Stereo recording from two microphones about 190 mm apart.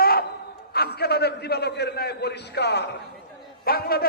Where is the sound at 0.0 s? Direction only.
55° left (ahead or behind).